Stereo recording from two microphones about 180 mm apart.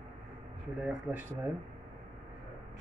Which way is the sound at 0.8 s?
5° right (ahead or behind).